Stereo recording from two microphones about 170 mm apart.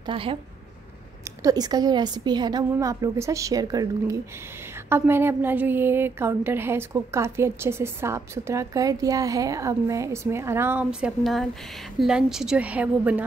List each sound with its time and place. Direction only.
0.0 s a woman's voice: 30° right (ahead or behind)
1.4 s a woman's voice: 20° right (ahead or behind)